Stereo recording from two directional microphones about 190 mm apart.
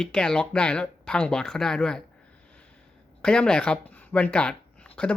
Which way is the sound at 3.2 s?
5° left (ahead or behind).